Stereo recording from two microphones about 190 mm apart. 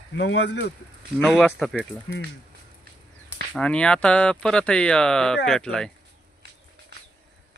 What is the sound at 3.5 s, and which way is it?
Speech, 5° left (ahead or behind).